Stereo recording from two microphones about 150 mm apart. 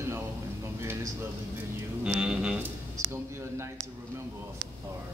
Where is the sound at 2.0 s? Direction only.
5° right (ahead or behind).